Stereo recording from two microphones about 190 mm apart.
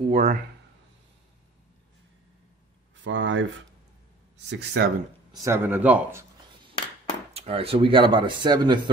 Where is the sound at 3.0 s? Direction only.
75° right (ahead or behind).